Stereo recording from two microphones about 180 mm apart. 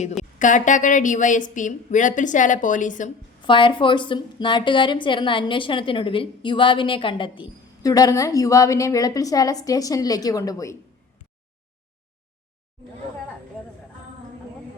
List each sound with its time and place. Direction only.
0.2 s a woman's voice: 45° left (ahead or behind)
3.4 s a woman's voice: 25° left (ahead or behind)